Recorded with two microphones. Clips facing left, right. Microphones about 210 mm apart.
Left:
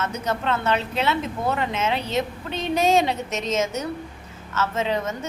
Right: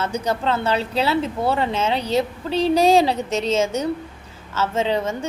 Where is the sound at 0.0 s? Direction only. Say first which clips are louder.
Right 3 dB; 30° right (ahead or behind).